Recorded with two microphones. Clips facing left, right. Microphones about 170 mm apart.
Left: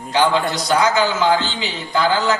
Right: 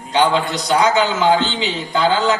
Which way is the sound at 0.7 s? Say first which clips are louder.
Right 2 dB; 20° right (ahead or behind).